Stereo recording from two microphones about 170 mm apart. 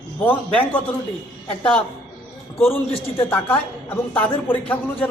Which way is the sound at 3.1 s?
15° left (ahead or behind).